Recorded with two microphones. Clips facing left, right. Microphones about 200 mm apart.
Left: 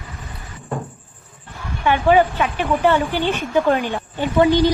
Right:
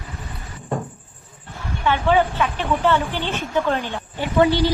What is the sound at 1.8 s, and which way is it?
A woman's voice, 15° left (ahead or behind).